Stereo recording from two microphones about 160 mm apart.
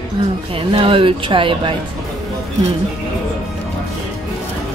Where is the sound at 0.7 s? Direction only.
35° right (ahead or behind).